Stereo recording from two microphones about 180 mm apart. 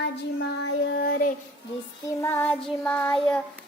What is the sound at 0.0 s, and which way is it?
Child singing, 70° left (ahead or behind).